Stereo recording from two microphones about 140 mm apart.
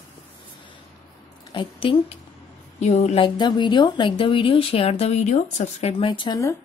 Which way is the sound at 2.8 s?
50° left (ahead or behind).